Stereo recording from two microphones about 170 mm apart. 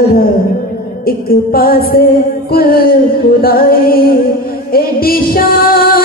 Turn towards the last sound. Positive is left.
turn(degrees=60)  # may be behind; listen again after turning